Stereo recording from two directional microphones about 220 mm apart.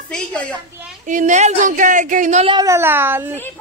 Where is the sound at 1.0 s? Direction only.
35° right (ahead or behind); by 3.3 s 10° right (ahead or behind).